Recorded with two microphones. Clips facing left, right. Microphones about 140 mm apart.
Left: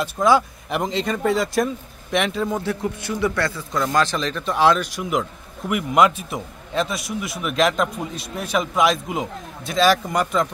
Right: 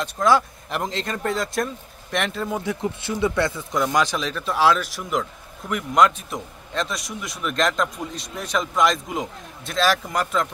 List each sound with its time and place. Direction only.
0.0 s a man's voice: 5° left (ahead or behind)
2.6 s a man's voice: 20° right (ahead or behind); by 10.5 s centre (ahead or behind)